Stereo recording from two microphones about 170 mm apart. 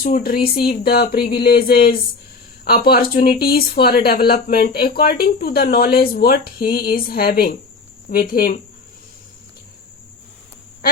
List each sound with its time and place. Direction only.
0.0 s speech: 60° left (ahead or behind)